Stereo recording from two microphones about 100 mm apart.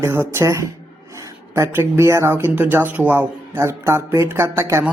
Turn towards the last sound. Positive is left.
turn(degrees=-25)  # may be behind; listen again after turning